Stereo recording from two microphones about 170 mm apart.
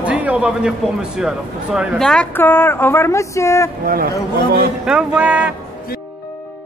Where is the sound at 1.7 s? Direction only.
Centre (ahead or behind).